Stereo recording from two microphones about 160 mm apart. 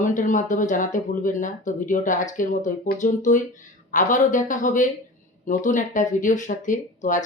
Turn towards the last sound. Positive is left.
turn(degrees=50)  # may be behind; listen again after turning